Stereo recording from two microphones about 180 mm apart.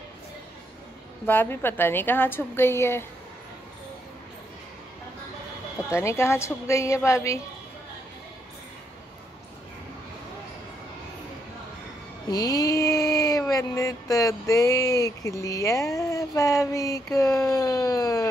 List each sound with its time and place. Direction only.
1.2 s a woman's voice: 10° left (ahead or behind)
5.9 s a woman's voice: 15° left (ahead or behind)
12.3 s a sound: 20° left (ahead or behind)
16.0 s speech: 20° left (ahead or behind)